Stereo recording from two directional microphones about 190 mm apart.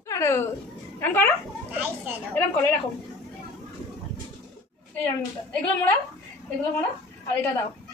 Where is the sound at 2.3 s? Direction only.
10° left (ahead or behind).